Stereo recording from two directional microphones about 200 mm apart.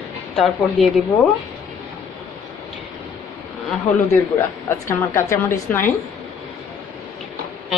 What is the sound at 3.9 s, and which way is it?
Speech, 35° left (ahead or behind).